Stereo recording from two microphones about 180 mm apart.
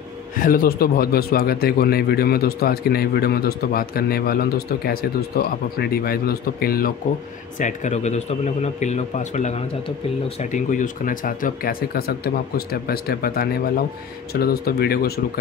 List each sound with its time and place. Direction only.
0.4 s a man's voice: 50° left (ahead or behind)
7.5 s a man's voice: 45° left (ahead or behind); by 15.1 s 60° left (ahead or behind)